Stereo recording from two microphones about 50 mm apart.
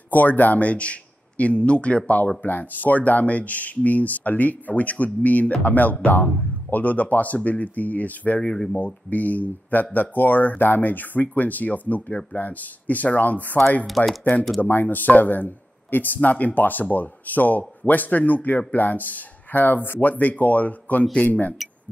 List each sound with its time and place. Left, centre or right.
0.1 s speech: left
8.4 s speech: centre
8.7 s speech: left
12.1 s speech: centre
12.4 s speech: left
13.8 s speech: centre
14.6 s speech: left